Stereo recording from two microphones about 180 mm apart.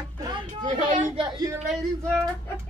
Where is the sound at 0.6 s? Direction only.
45° right (ahead or behind).